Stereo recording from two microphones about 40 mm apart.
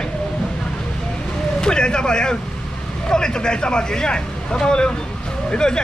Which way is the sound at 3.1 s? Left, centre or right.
Centre.